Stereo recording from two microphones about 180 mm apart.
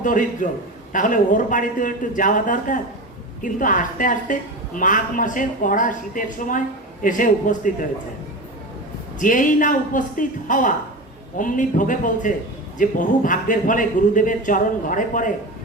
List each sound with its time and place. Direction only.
0.0 s a woman's voice: 45° left (ahead or behind)
9.1 s a woman's voice: 45° left (ahead or behind)